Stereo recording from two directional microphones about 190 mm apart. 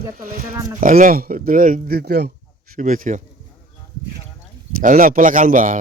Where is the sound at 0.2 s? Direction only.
45° right (ahead or behind).